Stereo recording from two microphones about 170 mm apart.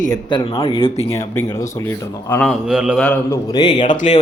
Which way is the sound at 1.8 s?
10° left (ahead or behind).